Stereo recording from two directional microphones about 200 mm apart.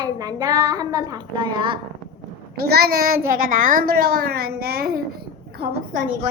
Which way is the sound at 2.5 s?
50° right (ahead or behind).